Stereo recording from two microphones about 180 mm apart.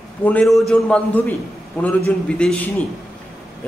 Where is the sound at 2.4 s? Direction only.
5° left (ahead or behind).